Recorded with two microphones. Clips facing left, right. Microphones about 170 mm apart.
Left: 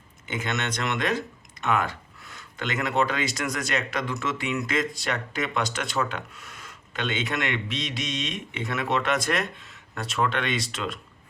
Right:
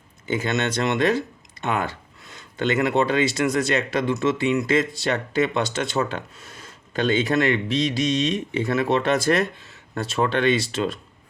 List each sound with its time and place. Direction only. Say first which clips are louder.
0.3 s speech: right 6 dB; 30° right (ahead or behind)